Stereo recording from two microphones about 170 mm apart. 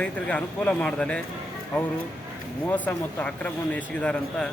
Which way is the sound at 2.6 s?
10° left (ahead or behind).